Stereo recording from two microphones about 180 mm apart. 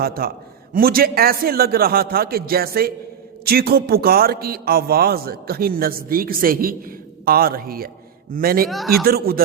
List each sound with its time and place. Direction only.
0.0 s a man's voice: 60° right (ahead or behind)
8.7 s speech: centre (ahead or behind)
9.0 s a man's voice: 55° right (ahead or behind)